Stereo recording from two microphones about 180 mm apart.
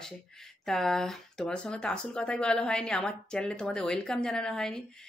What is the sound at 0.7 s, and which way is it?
Speech, centre (ahead or behind).